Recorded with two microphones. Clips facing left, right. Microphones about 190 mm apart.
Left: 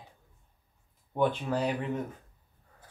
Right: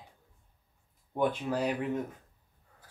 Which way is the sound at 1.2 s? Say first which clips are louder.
Left 1 dB; 10° right (ahead or behind).